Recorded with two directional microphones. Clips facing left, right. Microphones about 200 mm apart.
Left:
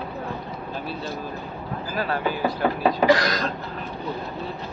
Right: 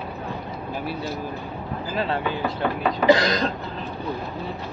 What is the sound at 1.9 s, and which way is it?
Speech, 25° right (ahead or behind).